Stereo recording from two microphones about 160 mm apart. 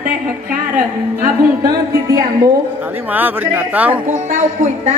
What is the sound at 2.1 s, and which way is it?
Speech, 20° right (ahead or behind).